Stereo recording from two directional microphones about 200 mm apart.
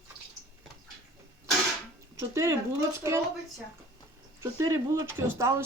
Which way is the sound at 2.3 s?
15° right (ahead or behind).